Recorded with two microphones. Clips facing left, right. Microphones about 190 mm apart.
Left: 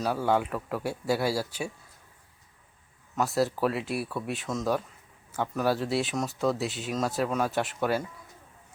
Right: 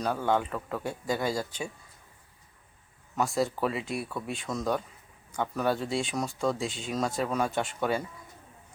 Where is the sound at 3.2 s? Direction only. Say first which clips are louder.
Left 2 dB; 5° left (ahead or behind).